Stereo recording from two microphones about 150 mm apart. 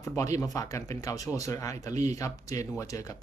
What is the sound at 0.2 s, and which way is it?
Speech, 20° left (ahead or behind).